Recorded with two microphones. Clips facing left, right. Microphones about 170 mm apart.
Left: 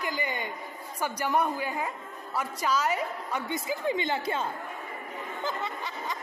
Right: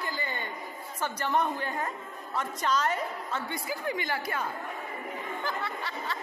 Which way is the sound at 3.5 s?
20° left (ahead or behind).